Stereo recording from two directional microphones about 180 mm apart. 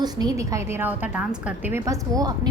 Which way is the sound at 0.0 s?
20° right (ahead or behind).